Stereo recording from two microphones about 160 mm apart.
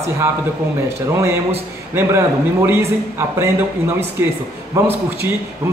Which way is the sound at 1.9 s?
15° right (ahead or behind).